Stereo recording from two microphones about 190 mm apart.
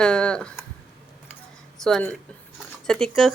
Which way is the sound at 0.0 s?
5° left (ahead or behind).